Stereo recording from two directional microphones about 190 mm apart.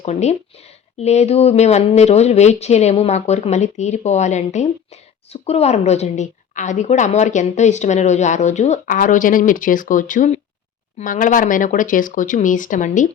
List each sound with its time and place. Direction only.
0.0 s a woman's voice: 35° left (ahead or behind)